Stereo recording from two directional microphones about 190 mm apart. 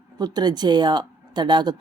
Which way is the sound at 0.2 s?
20° right (ahead or behind).